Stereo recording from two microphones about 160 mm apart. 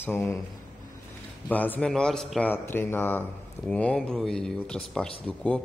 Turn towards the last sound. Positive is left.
turn(degrees=5)  # may be behind; listen again after turning